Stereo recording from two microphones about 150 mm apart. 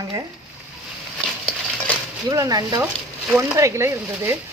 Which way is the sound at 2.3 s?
25° right (ahead or behind).